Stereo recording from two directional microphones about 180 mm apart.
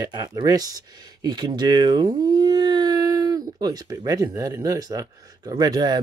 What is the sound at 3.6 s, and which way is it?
Speech, 20° right (ahead or behind).